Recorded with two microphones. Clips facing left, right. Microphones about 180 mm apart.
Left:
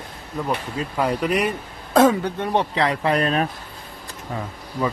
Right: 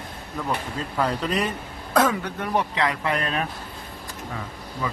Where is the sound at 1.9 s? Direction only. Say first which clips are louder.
Left 6 dB; 30° left (ahead or behind).